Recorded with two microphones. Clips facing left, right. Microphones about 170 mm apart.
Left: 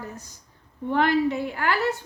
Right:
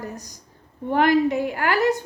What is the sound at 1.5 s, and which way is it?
Speech, 50° right (ahead or behind).